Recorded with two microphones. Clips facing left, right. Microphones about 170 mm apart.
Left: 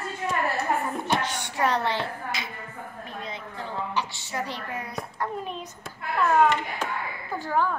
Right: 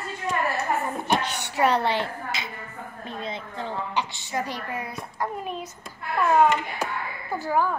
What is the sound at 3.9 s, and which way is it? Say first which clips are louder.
Speech: right 2 dB; 15° right (ahead or behind).